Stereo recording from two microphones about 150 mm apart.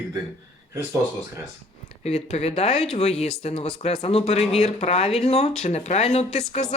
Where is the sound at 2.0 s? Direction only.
45° left (ahead or behind).